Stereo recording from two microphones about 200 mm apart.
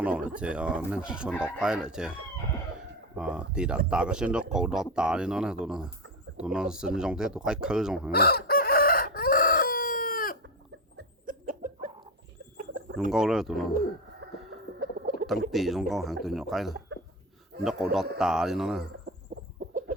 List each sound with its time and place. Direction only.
0.0 s speech: 5° right (ahead or behind)
3.2 s speech: 5° right (ahead or behind)
8.1 s chicken: 50° left (ahead or behind)
10.9 s chicken: 45° right (ahead or behind)
13.1 s speech: centre (ahead or behind)
14.8 s a sound: 45° right (ahead or behind)
15.4 s speech: centre (ahead or behind)
19.6 s chicken: 40° right (ahead or behind)